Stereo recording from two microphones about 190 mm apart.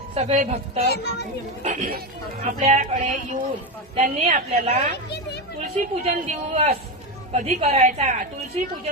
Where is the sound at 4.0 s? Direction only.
35° right (ahead or behind).